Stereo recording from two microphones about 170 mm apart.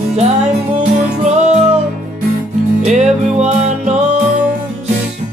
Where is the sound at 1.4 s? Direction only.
40° right (ahead or behind).